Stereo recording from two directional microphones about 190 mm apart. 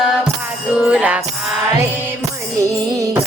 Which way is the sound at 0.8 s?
5° right (ahead or behind).